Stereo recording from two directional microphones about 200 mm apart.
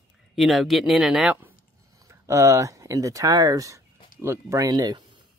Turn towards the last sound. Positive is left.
turn(degrees=-20)  # may be behind; listen again after turning